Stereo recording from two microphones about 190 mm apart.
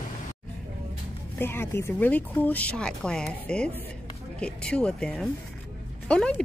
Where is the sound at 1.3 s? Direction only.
10° left (ahead or behind).